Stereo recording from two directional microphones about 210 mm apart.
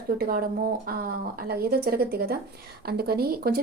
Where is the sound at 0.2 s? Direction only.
45° right (ahead or behind).